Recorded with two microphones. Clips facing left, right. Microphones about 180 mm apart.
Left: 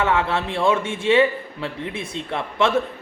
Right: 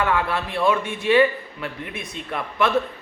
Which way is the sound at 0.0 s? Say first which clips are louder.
Left 2 dB; 25° left (ahead or behind).